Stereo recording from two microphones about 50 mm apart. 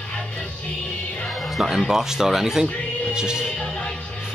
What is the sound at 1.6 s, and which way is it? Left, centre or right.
Speech, centre.